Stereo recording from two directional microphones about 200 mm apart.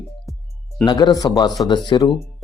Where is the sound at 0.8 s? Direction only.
20° left (ahead or behind).